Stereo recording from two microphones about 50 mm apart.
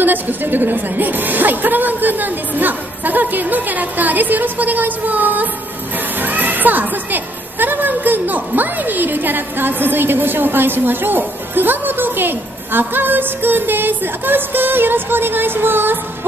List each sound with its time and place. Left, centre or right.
0.0 s a woman's voice: right